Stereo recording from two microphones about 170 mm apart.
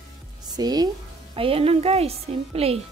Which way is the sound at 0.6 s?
25° right (ahead or behind).